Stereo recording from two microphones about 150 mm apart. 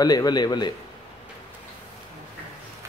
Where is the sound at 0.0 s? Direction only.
25° left (ahead or behind).